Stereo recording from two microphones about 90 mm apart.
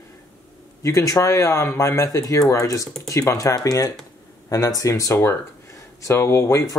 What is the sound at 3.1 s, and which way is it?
Speech, 40° left (ahead or behind).